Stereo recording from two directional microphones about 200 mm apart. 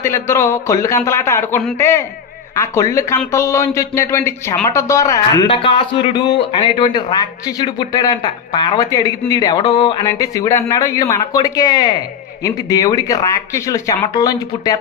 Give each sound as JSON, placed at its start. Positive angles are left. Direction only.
{"t": 0.0, "sound": "a man's voice", "side_deg": 15}